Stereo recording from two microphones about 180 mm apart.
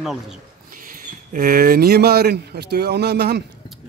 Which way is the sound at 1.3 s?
50° right (ahead or behind).